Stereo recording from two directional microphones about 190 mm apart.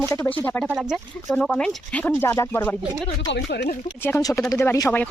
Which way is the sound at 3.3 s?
60° left (ahead or behind).